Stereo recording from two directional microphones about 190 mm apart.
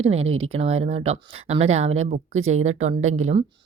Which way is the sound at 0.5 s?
35° right (ahead or behind).